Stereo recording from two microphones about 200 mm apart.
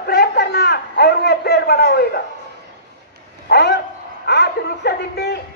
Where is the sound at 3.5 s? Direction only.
55° left (ahead or behind).